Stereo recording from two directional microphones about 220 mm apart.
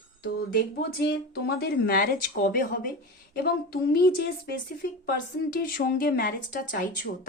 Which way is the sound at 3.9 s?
45° left (ahead or behind).